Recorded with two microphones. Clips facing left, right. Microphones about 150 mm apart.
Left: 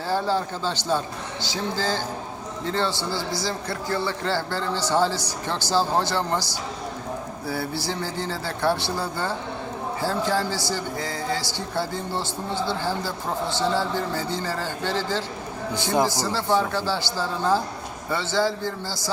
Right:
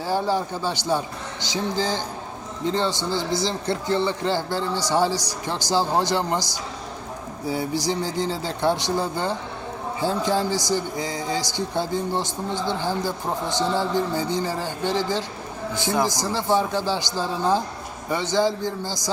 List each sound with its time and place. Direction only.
0.1 s speech: 15° right (ahead or behind)
7.4 s speech: 15° right (ahead or behind)